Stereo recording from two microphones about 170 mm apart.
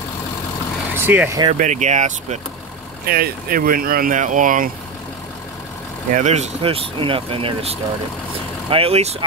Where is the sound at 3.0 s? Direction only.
60° right (ahead or behind).